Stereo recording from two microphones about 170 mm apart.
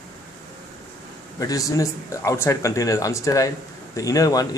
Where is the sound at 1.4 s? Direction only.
20° left (ahead or behind).